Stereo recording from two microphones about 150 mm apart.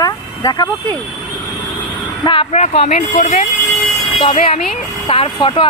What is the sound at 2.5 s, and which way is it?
Speech, 45° left (ahead or behind).